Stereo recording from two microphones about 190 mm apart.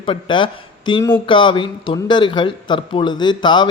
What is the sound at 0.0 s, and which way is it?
A man's voice, 25° left (ahead or behind).